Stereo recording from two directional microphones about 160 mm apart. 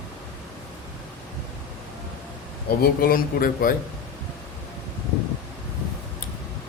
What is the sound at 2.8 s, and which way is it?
Speech, 70° left (ahead or behind).